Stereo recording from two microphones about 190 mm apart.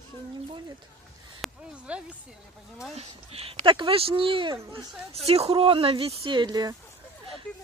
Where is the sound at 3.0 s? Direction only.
30° right (ahead or behind).